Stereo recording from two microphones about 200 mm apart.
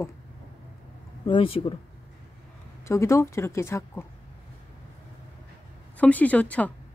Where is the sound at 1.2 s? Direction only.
25° left (ahead or behind).